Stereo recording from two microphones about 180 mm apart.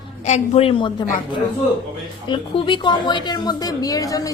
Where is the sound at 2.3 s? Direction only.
25° left (ahead or behind).